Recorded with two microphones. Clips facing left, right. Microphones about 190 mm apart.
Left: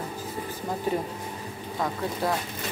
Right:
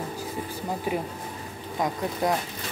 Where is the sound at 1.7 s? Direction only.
15° right (ahead or behind).